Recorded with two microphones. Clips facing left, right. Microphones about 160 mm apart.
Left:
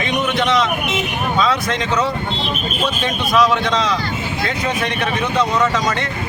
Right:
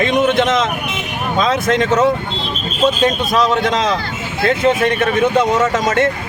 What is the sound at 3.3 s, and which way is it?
A man's voice, 45° right (ahead or behind).